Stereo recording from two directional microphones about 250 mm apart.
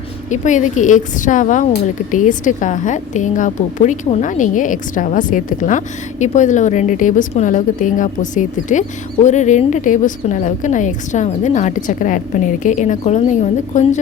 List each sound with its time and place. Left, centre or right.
0.3 s a woman's voice: left